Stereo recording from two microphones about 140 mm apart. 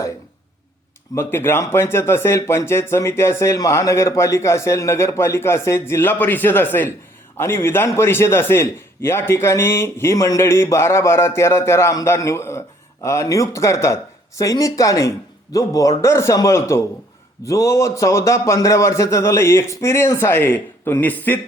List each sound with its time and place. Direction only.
1.1 s a man's voice: 15° left (ahead or behind)